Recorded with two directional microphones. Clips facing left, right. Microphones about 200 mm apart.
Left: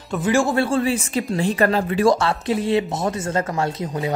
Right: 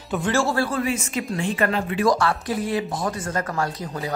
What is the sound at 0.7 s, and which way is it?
Speech, 30° left (ahead or behind).